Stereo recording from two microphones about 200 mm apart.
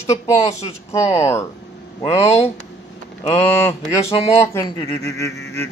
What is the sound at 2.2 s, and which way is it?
Speech, 30° left (ahead or behind).